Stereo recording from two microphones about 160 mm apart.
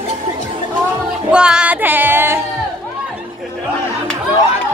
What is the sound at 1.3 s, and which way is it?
Music, 5° right (ahead or behind).